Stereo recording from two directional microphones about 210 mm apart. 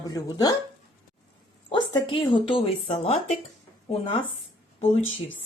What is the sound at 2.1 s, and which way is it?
Speech, 25° left (ahead or behind).